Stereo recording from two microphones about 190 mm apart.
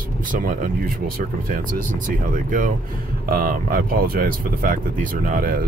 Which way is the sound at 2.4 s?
45° right (ahead or behind).